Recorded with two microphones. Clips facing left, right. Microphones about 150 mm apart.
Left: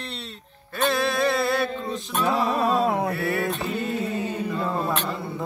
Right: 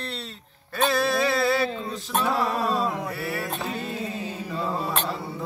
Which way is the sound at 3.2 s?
Centre (ahead or behind).